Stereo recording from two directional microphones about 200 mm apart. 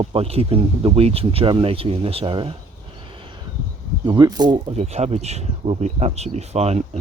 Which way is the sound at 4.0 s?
20° right (ahead or behind).